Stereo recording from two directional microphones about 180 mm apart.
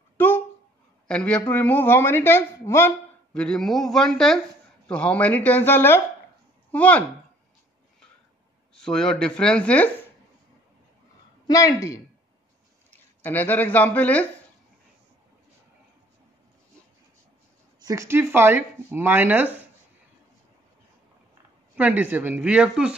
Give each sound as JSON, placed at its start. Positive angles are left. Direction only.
{"t": 1.0, "sound": "speech", "side_deg": 5}
{"t": 3.3, "sound": "speech", "side_deg": 0}
{"t": 8.7, "sound": "speech", "side_deg": 5}
{"t": 11.4, "sound": "speech", "side_deg": 20}
{"t": 17.7, "sound": "speech", "side_deg": -20}
{"t": 21.7, "sound": "speech", "side_deg": -10}